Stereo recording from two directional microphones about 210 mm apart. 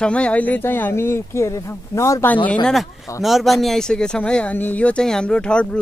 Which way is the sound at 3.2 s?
Centre (ahead or behind).